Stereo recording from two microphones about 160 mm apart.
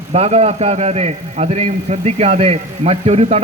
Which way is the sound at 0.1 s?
40° right (ahead or behind).